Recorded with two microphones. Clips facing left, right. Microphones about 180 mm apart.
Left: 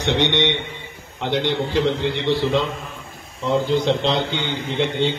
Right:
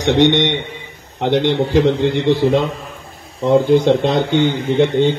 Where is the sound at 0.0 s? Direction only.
50° right (ahead or behind).